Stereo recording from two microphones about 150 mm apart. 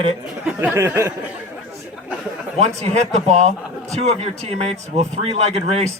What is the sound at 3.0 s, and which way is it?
Speech, 50° right (ahead or behind).